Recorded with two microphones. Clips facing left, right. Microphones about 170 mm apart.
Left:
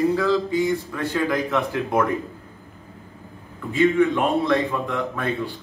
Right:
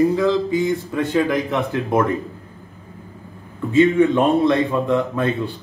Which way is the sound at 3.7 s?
20° right (ahead or behind).